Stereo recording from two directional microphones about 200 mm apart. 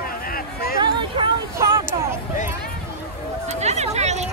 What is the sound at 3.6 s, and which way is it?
Hubbub, 35° right (ahead or behind).